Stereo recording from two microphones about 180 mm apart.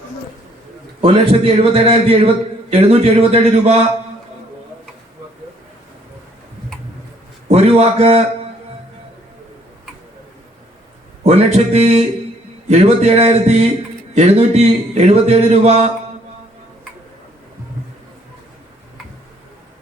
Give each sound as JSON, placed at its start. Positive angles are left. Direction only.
{"t": 1.0, "sound": "a man's voice", "side_deg": -30}
{"t": 7.4, "sound": "a man's voice", "side_deg": -35}
{"t": 11.2, "sound": "a man's voice", "side_deg": -35}